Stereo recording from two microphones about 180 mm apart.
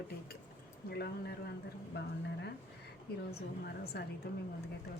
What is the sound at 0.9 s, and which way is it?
Speech, 60° left (ahead or behind).